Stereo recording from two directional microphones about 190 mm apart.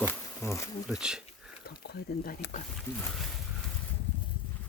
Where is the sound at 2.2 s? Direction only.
50° left (ahead or behind).